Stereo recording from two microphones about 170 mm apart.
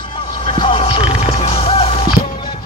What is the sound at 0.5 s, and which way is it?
Music, 30° left (ahead or behind).